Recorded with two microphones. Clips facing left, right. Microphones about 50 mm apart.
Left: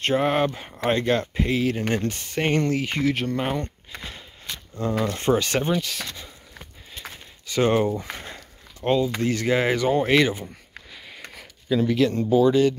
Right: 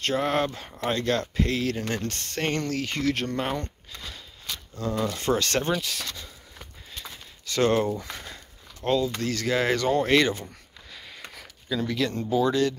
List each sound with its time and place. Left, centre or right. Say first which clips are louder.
0.0 s speech: left 4 dB; left
2.1 s speech: left 5 dB; centre
3.6 s a sound: left 3 dB; left
5.0 s speech: left 3 dB; left
5.3 s speech: left 3 dB; centre
6.0 s a sound: left 1 dB; centre
7.4 s speech: left 2 dB; centre
12.1 s speech: left 6 dB; left
12.4 s speech: left 5 dB; centre